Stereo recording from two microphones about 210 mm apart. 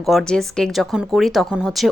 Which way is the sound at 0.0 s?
Centre (ahead or behind).